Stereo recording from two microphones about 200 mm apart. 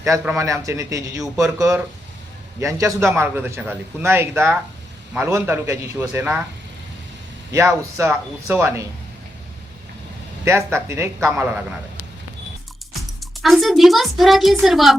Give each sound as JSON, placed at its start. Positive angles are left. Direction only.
{"t": 0.0, "sound": "a man's voice", "side_deg": -15}
{"t": 7.5, "sound": "a man's voice", "side_deg": -15}
{"t": 10.4, "sound": "a man's voice", "side_deg": -15}
{"t": 13.0, "sound": "speech", "side_deg": 0}